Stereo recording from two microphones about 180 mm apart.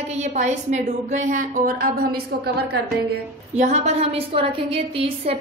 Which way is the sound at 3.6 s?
40° right (ahead or behind).